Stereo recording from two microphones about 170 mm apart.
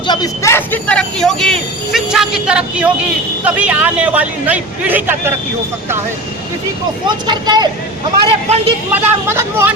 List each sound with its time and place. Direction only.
0.1 s a man's voice: 20° left (ahead or behind); by 5.3 s 10° right (ahead or behind)
7.1 s a man's voice: 25° right (ahead or behind)
8.9 s a man's voice: 15° right (ahead or behind)